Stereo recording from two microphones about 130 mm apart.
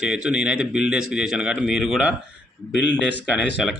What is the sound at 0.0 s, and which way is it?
Speech, 5° right (ahead or behind).